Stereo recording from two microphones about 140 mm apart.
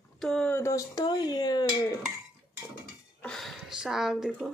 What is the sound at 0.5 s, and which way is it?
Speech, 20° left (ahead or behind).